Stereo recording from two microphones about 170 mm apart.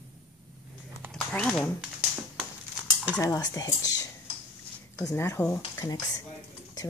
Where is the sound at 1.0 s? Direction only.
5° left (ahead or behind).